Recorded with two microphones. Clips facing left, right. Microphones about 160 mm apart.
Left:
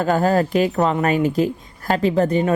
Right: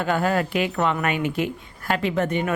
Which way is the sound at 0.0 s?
40° left (ahead or behind).